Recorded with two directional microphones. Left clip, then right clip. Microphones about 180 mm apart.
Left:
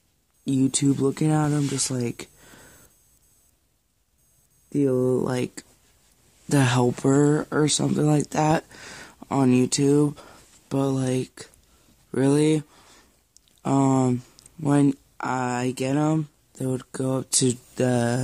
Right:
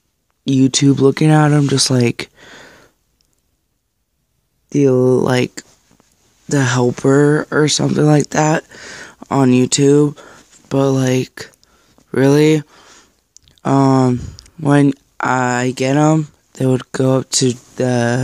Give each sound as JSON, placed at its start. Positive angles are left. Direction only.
{"t": 0.5, "sound": "speech", "side_deg": -25}
{"t": 4.6, "sound": "speech", "side_deg": -35}
{"t": 6.5, "sound": "speech", "side_deg": -5}
{"t": 10.7, "sound": "speech", "side_deg": -20}
{"t": 12.1, "sound": "a sound", "side_deg": -25}
{"t": 14.3, "sound": "speech", "side_deg": -20}